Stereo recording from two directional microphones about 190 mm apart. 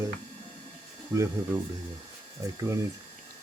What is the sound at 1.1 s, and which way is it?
Speech, 15° right (ahead or behind).